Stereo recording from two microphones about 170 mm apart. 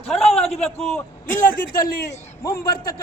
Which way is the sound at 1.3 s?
50° left (ahead or behind).